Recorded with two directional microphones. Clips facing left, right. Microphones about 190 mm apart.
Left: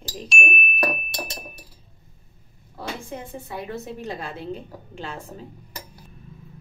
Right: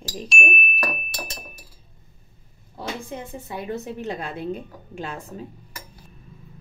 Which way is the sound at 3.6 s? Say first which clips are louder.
Right 6 dB; 15° right (ahead or behind).